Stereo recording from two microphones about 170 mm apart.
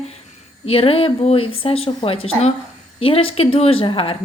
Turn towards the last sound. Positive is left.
turn(degrees=30)  # may be behind; listen again after turning